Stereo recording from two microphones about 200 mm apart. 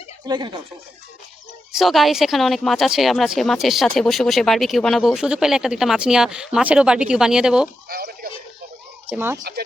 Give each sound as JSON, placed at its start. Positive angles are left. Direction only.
{"t": 0.3, "sound": "speech", "side_deg": -20}
{"t": 1.7, "sound": "speech", "side_deg": 0}
{"t": 7.9, "sound": "a sound", "side_deg": -50}
{"t": 9.0, "sound": "speech", "side_deg": -10}